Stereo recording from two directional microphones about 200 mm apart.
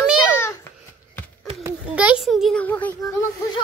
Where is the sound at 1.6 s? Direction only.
5° right (ahead or behind); by 3.1 s 10° left (ahead or behind).